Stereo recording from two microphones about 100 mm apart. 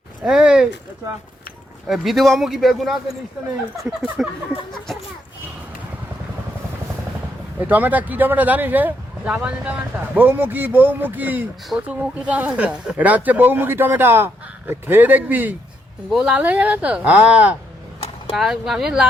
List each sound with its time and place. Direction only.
0.3 s speech: 10° right (ahead or behind)
1.9 s speech: centre (ahead or behind)
7.6 s speech: 15° right (ahead or behind)
18.3 s speech: 5° right (ahead or behind)